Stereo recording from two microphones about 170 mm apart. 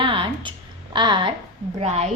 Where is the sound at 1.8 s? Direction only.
40° right (ahead or behind).